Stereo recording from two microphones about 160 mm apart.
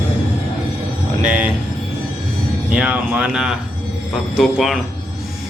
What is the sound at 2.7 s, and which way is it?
Speech, 5° right (ahead or behind).